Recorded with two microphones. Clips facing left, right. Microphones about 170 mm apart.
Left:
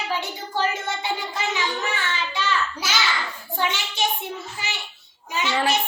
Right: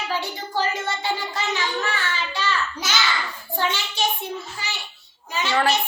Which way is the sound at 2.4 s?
15° left (ahead or behind).